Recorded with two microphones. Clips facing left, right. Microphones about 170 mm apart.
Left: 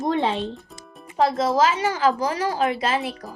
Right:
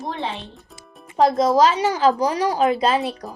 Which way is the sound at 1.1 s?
15° right (ahead or behind).